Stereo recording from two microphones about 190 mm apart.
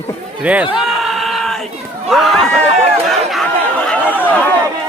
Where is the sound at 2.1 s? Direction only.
Centre (ahead or behind).